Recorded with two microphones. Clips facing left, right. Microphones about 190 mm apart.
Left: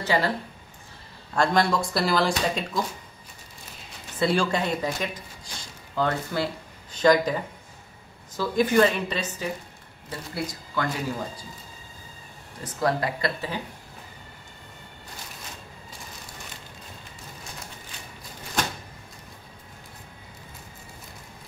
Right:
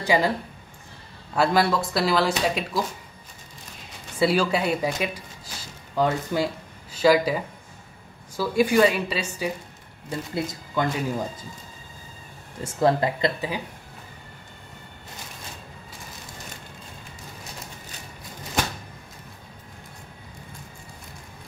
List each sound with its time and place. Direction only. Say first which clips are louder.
0.0 s speech: right 3 dB; 15° right (ahead or behind)
1.3 s speech: right 1 dB; 5° right (ahead or behind)
4.2 s a woman's voice: right 2 dB; 5° right (ahead or behind)
12.6 s speech: right 4 dB; 25° right (ahead or behind)